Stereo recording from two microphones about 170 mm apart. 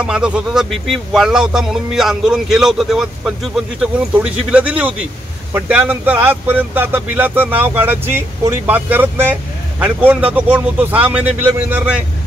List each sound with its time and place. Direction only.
0.0 s speech: 5° right (ahead or behind)